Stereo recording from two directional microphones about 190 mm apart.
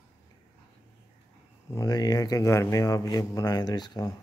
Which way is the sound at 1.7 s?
20° left (ahead or behind).